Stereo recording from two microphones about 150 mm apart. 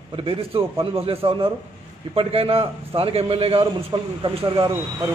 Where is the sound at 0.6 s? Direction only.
35° right (ahead or behind).